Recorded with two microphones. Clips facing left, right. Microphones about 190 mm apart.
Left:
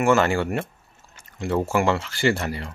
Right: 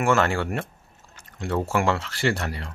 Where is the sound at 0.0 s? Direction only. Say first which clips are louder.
Left 3 dB; centre (ahead or behind).